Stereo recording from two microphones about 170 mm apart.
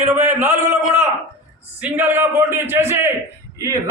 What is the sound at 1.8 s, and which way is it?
A man's voice, 10° right (ahead or behind).